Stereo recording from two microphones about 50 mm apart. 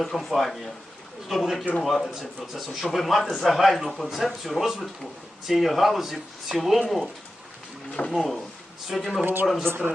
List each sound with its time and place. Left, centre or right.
0.0 s speech: centre
8.1 s speech: centre
9.2 s speech: right